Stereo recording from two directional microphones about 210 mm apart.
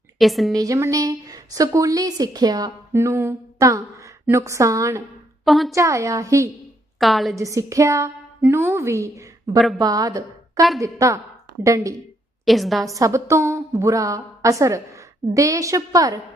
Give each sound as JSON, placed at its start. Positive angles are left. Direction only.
{"t": 0.2, "sound": "a woman's voice", "side_deg": 0}
{"t": 0.5, "sound": "a woman's voice", "side_deg": -15}
{"t": 5.5, "sound": "a woman's voice", "side_deg": 0}
{"t": 5.7, "sound": "a woman's voice", "side_deg": -15}
{"t": 7.0, "sound": "a woman's voice", "side_deg": 0}
{"t": 7.3, "sound": "a woman's voice", "side_deg": -15}
{"t": 12.5, "sound": "a woman's voice", "side_deg": 0}
{"t": 12.8, "sound": "a woman's voice", "side_deg": -15}